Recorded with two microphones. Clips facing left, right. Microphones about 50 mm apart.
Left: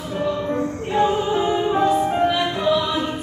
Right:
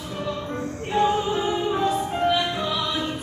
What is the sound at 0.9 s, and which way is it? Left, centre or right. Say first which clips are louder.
Music: left 2 dB; centre.